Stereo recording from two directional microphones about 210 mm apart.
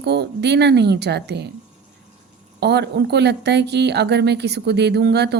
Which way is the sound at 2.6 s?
55° right (ahead or behind).